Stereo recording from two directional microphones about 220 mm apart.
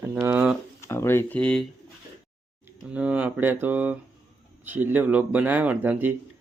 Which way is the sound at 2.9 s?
5° right (ahead or behind).